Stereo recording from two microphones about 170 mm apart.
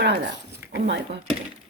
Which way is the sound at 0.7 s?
90° right.